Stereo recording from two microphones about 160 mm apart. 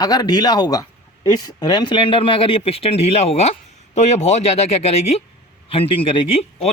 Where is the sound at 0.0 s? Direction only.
25° left (ahead or behind).